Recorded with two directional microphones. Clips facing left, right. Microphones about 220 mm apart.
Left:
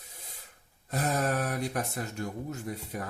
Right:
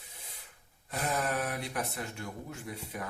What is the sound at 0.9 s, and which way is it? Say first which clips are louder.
Speech: left 4 dB; 45° left (ahead or behind).